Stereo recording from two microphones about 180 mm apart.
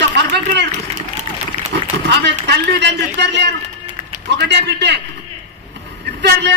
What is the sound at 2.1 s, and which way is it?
A man's voice, 70° right (ahead or behind).